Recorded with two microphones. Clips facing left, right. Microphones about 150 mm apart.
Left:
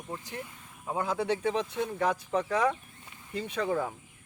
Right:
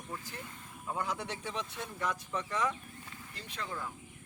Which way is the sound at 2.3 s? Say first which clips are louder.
Left 7 dB; 60° left (ahead or behind).